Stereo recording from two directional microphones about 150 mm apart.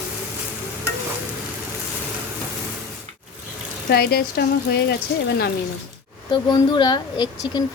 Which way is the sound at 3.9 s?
90° left.